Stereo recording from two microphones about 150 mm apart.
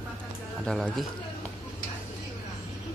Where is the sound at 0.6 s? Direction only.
5° left (ahead or behind).